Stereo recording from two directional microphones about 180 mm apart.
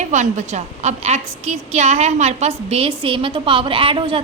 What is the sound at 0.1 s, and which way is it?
A woman's voice, 40° right (ahead or behind).